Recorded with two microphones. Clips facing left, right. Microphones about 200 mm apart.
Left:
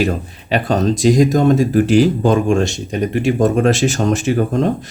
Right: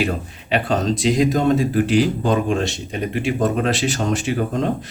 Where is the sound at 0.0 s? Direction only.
40° left (ahead or behind).